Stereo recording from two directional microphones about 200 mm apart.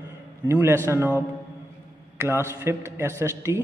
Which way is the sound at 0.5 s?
10° right (ahead or behind).